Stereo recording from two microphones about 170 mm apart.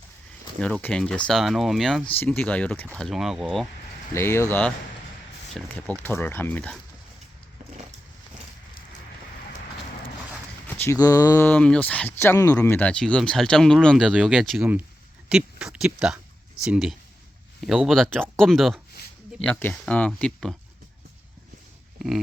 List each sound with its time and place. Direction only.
0.6 s speech: 5° left (ahead or behind)
4.1 s speech: 15° left (ahead or behind)
10.7 s a sound: 15° left (ahead or behind)
11.4 s speech: 5° left (ahead or behind)